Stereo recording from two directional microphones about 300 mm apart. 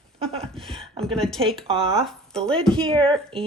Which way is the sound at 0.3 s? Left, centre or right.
Centre.